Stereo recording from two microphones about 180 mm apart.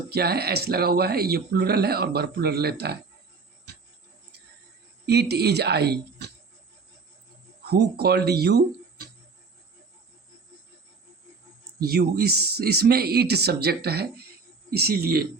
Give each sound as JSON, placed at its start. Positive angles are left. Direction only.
{"t": 0.1, "sound": "speech", "side_deg": -60}
{"t": 5.0, "sound": "speech", "side_deg": -65}
{"t": 7.6, "sound": "speech", "side_deg": -60}
{"t": 11.8, "sound": "speech", "side_deg": -60}